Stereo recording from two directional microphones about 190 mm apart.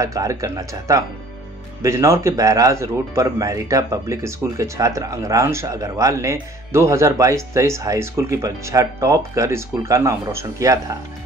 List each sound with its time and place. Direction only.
0.0 s a man's voice: 15° right (ahead or behind)